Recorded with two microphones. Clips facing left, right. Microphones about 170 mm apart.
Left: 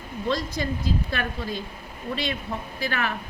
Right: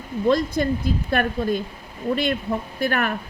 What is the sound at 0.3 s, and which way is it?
A woman's voice, 55° right (ahead or behind).